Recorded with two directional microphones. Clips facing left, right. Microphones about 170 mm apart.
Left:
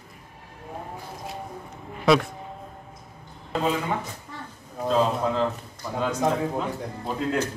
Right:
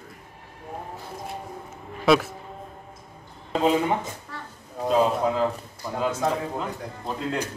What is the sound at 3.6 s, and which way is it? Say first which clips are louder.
Speech: right 4 dB; 20° right (ahead or behind).